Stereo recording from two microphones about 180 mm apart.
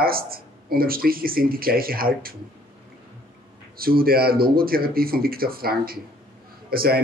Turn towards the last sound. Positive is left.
turn(degrees=-55)  # may be behind; listen again after turning